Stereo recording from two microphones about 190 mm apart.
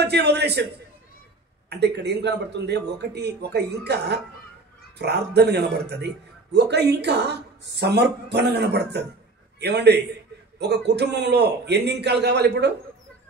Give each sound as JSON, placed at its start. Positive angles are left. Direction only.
{"t": 0.0, "sound": "a man's voice", "side_deg": -60}
{"t": 1.7, "sound": "a man's voice", "side_deg": -65}